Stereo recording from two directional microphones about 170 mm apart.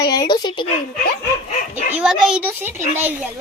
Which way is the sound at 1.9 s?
5° right (ahead or behind).